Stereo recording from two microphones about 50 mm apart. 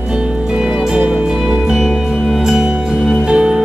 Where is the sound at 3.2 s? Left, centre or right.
Right.